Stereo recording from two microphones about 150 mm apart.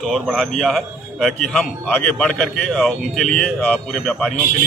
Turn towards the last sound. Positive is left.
turn(degrees=5)  # may be behind; listen again after turning